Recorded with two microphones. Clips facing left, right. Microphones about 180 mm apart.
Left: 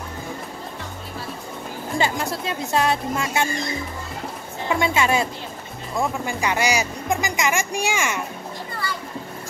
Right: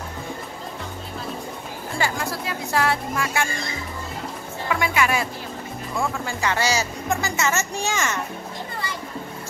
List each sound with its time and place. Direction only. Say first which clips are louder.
2.0 s speech: left 2 dB; 20° left (ahead or behind)
4.6 s speech: left 2 dB; 25° left (ahead or behind)